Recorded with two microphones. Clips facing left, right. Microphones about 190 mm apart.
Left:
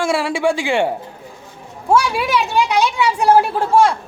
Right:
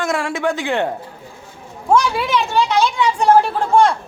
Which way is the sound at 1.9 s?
10° left (ahead or behind).